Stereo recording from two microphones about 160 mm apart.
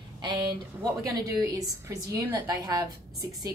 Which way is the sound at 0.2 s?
30° right (ahead or behind).